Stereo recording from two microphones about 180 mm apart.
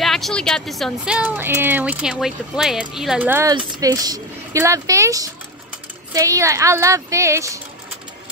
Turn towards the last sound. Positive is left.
turn(degrees=-15)  # may be behind; listen again after turning